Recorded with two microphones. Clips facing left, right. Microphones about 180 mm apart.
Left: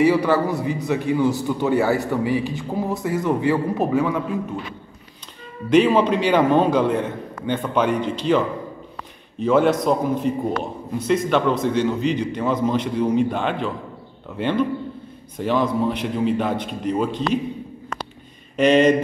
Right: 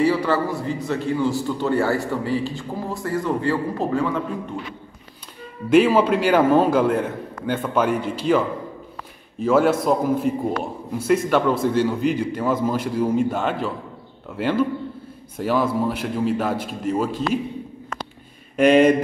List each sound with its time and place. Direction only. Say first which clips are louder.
0.0 s a man's voice: left 2 dB; 15° left (ahead or behind)
5.7 s a man's voice: even; 5° right (ahead or behind)
18.6 s a man's voice: right 1 dB; 10° right (ahead or behind)